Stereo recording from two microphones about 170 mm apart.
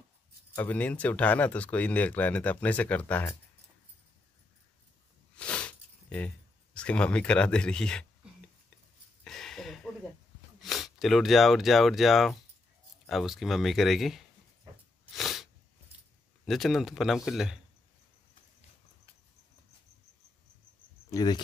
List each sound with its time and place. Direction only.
0.6 s speech: 10° left (ahead or behind)
5.3 s a sound: 5° left (ahead or behind)
9.2 s a sound: 5° left (ahead or behind)
10.6 s speech: centre (ahead or behind)
15.1 s sneeze: centre (ahead or behind)
16.4 s speech: centre (ahead or behind)
21.1 s speech: 25° left (ahead or behind)